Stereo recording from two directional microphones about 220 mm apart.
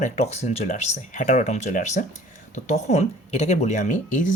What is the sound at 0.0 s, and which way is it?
Speech, 30° left (ahead or behind).